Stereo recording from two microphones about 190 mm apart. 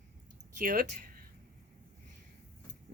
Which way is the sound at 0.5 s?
45° right (ahead or behind).